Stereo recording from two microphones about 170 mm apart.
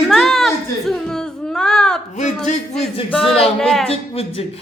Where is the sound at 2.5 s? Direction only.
40° left (ahead or behind).